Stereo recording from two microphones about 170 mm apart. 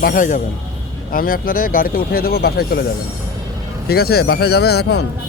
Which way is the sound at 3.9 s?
65° left (ahead or behind).